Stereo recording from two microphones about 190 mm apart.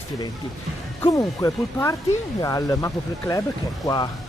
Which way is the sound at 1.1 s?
15° left (ahead or behind).